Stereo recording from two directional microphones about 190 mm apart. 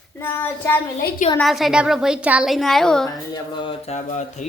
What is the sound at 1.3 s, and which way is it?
A woman's voice, centre (ahead or behind).